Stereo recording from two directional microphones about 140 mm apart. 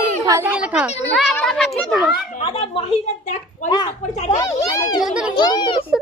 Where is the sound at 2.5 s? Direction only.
45° left (ahead or behind).